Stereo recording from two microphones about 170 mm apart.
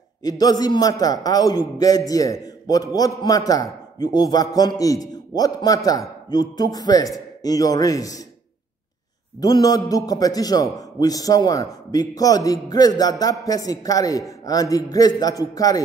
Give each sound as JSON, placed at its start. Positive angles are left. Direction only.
{"t": 0.2, "sound": "a man's voice", "side_deg": 20}
{"t": 9.4, "sound": "a man's voice", "side_deg": 20}